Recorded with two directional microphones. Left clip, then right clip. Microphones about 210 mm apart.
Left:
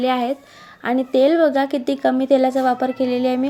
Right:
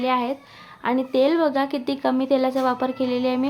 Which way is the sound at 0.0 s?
15° left (ahead or behind).